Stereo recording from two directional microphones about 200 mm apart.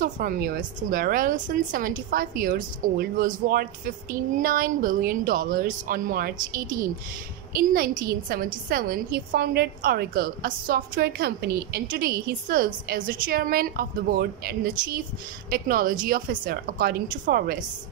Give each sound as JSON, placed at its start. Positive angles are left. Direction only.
{"t": 0.0, "sound": "a woman's voice", "side_deg": -45}